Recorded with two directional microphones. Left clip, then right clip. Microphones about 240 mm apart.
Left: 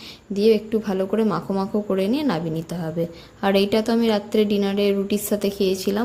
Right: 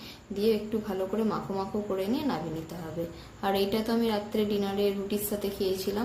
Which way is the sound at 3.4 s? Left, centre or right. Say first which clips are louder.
Left 8 dB; left.